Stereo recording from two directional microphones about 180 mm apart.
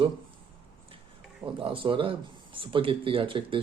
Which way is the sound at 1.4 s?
30° right (ahead or behind).